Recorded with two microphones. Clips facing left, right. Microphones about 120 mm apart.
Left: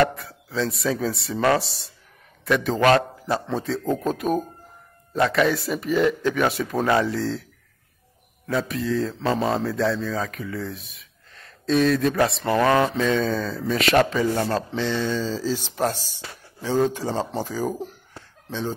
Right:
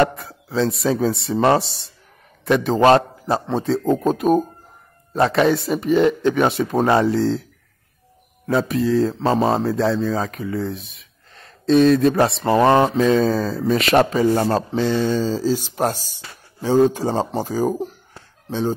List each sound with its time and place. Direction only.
0.0 s speech: 30° right (ahead or behind)
8.5 s speech: 35° right (ahead or behind)